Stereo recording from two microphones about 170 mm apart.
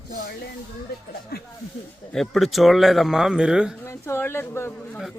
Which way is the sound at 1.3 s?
65° left (ahead or behind).